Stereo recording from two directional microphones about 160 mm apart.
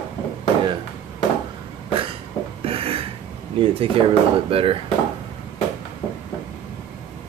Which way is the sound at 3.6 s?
35° right (ahead or behind).